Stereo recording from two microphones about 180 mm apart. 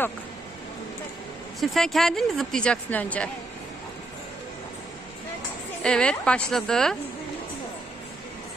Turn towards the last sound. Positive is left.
turn(degrees=5)  # may be behind; listen again after turning